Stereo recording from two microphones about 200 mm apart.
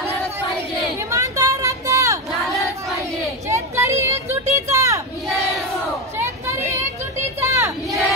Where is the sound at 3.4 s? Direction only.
15° right (ahead or behind).